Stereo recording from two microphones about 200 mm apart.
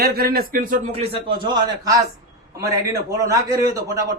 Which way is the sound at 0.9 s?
30° right (ahead or behind).